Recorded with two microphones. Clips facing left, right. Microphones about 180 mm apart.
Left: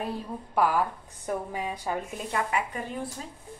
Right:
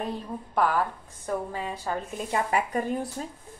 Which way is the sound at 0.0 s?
10° left (ahead or behind).